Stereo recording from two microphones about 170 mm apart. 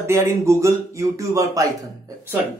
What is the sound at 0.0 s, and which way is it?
A man's voice, 15° right (ahead or behind).